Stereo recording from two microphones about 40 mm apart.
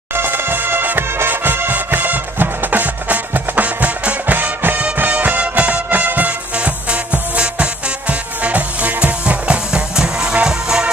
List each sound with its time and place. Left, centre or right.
0.1 s music: right
6.6 s music: right
9.2 s music: right